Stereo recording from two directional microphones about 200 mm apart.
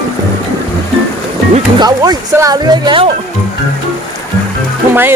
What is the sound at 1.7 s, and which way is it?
Speech, 20° right (ahead or behind).